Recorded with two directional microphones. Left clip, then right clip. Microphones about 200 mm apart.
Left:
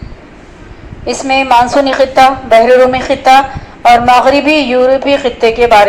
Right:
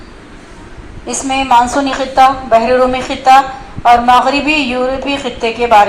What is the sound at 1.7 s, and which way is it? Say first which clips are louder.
A woman's voice: left 6 dB; 50° left (ahead or behind).